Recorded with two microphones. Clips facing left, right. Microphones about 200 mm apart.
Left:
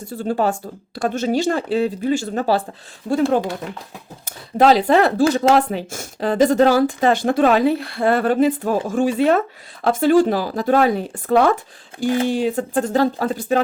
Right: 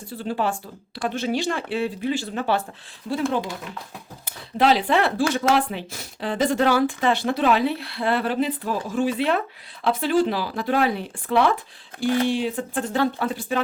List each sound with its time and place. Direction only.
0.0 s speech: 45° left (ahead or behind)
4.3 s speech: 45° left (ahead or behind)